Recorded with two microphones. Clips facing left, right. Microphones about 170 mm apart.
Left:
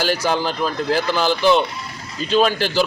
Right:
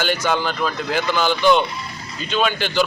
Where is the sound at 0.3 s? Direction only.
35° left (ahead or behind).